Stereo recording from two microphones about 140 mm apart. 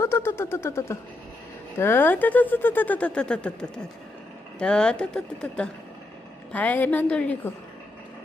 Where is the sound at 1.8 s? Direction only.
15° left (ahead or behind).